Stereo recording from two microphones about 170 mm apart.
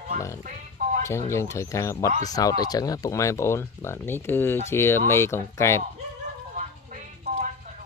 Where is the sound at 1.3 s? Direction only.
15° left (ahead or behind).